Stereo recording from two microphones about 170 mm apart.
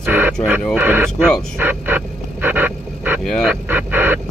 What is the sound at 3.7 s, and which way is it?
Duck, 10° right (ahead or behind).